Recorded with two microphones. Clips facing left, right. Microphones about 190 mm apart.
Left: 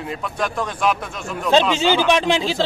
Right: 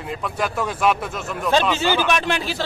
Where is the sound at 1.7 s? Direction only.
15° left (ahead or behind).